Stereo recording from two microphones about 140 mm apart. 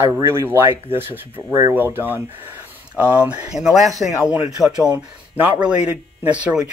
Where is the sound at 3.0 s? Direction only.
10° right (ahead or behind).